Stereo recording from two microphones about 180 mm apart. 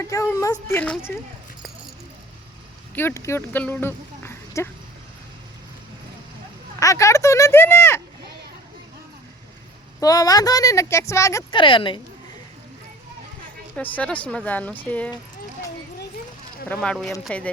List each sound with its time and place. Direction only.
0.0 s speech: 15° left (ahead or behind)
2.9 s speech: 10° left (ahead or behind)
6.7 s speech: 15° left (ahead or behind)
10.0 s speech: 20° left (ahead or behind)
11.6 s speech: 30° left (ahead or behind)
13.7 s speech: 10° left (ahead or behind)
16.6 s speech: 5° left (ahead or behind)